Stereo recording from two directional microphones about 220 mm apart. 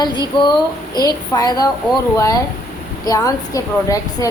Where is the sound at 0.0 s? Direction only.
20° left (ahead or behind).